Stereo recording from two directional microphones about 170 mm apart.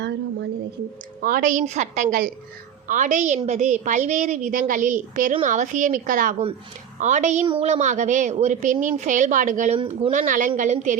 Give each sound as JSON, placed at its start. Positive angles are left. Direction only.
{"t": 0.0, "sound": "a sound", "side_deg": -90}
{"t": 1.2, "sound": "a woman's voice", "side_deg": -55}
{"t": 10.1, "sound": "a woman's voice", "side_deg": -50}